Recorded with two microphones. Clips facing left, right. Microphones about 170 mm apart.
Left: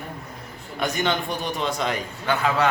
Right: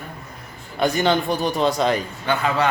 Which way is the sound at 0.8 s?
35° right (ahead or behind).